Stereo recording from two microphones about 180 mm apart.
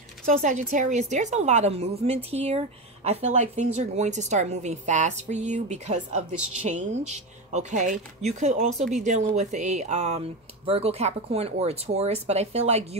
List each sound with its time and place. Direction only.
0.4 s a woman's voice: 45° right (ahead or behind)